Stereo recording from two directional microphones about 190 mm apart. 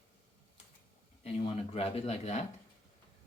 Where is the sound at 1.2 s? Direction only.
30° left (ahead or behind).